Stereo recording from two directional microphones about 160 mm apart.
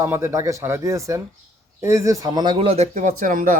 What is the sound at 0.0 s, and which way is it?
A man's voice, 15° right (ahead or behind).